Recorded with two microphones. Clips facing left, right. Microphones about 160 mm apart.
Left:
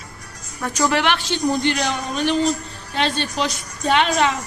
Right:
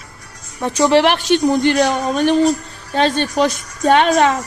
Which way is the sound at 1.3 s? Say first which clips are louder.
Right 6 dB; 50° right (ahead or behind).